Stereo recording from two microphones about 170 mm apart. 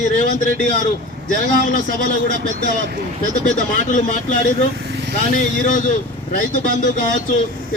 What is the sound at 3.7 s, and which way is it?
A man's voice, 50° left (ahead or behind).